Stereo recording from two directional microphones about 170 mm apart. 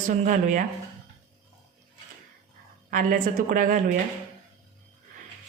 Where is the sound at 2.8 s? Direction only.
50° right (ahead or behind).